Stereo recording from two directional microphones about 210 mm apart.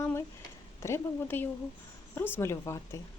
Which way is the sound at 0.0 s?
10° left (ahead or behind).